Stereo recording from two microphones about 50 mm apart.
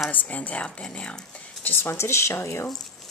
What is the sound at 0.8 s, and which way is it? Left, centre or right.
Speech, left.